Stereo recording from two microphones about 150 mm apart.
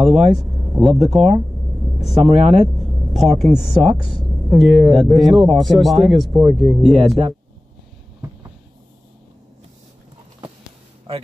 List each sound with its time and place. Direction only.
0.0 s speech: centre (ahead or behind)
2.2 s speech: 45° right (ahead or behind)
2.5 s speech: centre (ahead or behind)